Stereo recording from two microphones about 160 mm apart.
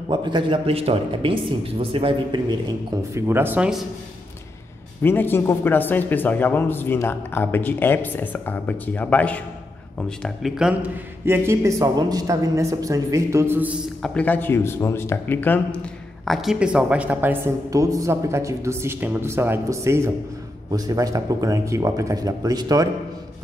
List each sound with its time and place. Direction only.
0.1 s speech: 30° right (ahead or behind)
3.1 s speech: 15° right (ahead or behind)
5.0 s speech: 15° left (ahead or behind); by 10.8 s 5° right (ahead or behind)
11.2 s a woman's voice: 15° right (ahead or behind)
14.0 s speech: 10° left (ahead or behind)
16.3 s a woman's voice: centre (ahead or behind); by 22.8 s 25° right (ahead or behind)